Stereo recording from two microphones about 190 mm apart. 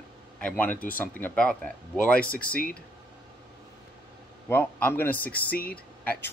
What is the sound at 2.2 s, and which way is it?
Speech, 50° left (ahead or behind).